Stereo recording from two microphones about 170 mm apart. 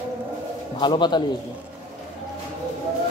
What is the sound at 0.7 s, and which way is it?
Speech, 25° left (ahead or behind).